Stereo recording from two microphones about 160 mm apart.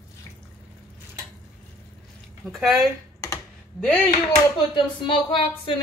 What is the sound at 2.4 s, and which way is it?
Speech, centre (ahead or behind).